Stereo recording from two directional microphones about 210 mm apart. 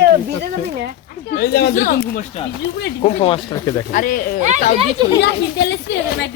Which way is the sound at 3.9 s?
40° left (ahead or behind).